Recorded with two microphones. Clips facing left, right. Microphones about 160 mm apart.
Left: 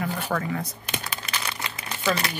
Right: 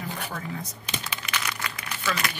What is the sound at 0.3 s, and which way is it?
Speech, 75° left (ahead or behind).